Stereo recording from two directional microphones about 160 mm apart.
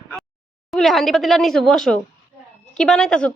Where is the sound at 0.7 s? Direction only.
Centre (ahead or behind).